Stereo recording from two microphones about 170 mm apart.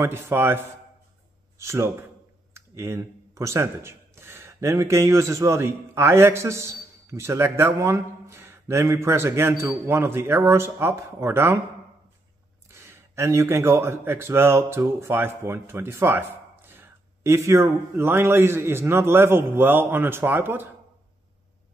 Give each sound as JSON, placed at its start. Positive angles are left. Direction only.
{"t": 0.0, "sound": "speech", "side_deg": -15}
{"t": 12.6, "sound": "speech", "side_deg": -15}